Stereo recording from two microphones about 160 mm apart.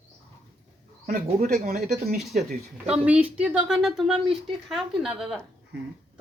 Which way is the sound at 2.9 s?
10° right (ahead or behind).